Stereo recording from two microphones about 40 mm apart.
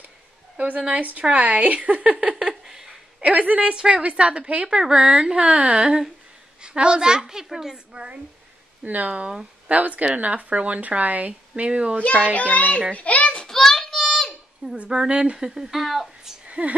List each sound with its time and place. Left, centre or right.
0.6 s speech: right
2.4 s a sound: centre
3.2 s speech: right
3.7 s a woman's voice: centre
4.0 s a woman's voice: right
4.6 s a woman's voice: centre
8.8 s speech: right
12.0 s a child's voice: left
12.4 s a child's voice: left
13.4 s a sound: centre
14.6 s a woman's voice: right
15.3 s a woman's voice: centre
15.7 s speech: centre
16.4 s a sound: right